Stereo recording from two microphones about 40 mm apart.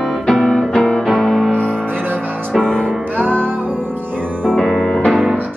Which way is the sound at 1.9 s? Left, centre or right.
Right.